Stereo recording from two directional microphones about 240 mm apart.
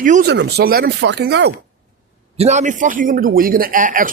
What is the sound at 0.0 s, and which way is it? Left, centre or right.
Speech, right.